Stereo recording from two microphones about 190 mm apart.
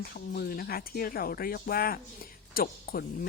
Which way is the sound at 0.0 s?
55° left (ahead or behind).